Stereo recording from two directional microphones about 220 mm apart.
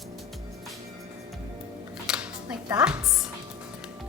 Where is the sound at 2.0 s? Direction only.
5° right (ahead or behind).